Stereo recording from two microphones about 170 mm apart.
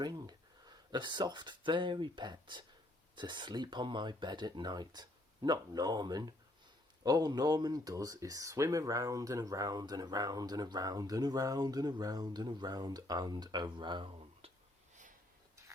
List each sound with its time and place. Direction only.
0.0 s speech: 25° right (ahead or behind)